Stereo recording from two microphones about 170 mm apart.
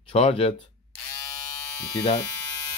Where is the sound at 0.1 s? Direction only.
35° left (ahead or behind).